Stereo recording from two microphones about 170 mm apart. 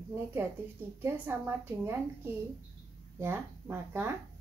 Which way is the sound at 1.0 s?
15° right (ahead or behind).